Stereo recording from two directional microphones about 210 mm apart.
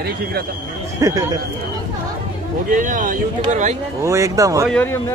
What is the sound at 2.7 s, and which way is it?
Speech, 40° right (ahead or behind).